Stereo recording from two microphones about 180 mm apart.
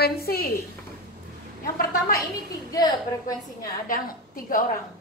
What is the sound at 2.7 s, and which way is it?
Speech, 20° left (ahead or behind).